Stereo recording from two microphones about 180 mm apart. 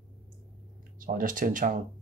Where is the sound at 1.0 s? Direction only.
50° right (ahead or behind).